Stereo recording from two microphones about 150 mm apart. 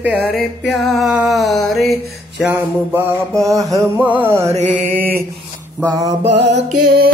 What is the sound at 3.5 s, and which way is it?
Music, 20° right (ahead or behind).